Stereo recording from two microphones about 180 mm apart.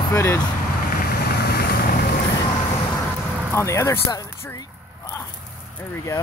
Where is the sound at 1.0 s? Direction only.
60° left (ahead or behind).